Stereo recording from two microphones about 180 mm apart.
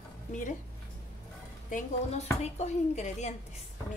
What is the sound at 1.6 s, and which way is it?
A woman's voice, 40° left (ahead or behind).